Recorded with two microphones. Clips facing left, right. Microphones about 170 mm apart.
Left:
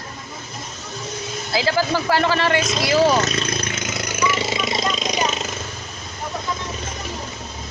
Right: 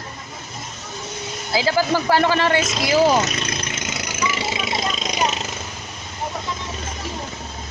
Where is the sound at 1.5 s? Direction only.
15° right (ahead or behind).